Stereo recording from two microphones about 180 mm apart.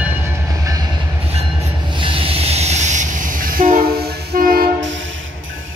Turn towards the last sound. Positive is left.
turn(degrees=-55)  # may be behind; listen again after turning